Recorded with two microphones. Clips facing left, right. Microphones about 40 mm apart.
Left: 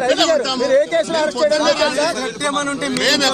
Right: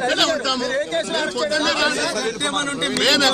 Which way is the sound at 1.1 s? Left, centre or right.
Right.